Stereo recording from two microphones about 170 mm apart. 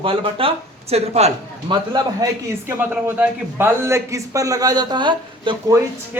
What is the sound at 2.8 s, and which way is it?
A man's voice, 10° right (ahead or behind).